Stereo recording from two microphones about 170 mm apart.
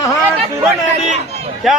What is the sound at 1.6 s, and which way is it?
Music, centre (ahead or behind).